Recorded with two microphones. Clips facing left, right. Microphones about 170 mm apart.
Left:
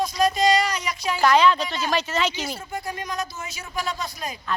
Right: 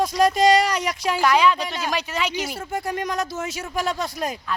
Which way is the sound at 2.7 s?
75° right (ahead or behind).